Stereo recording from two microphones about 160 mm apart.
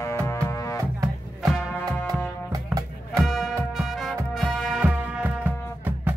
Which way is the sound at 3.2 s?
Centre (ahead or behind).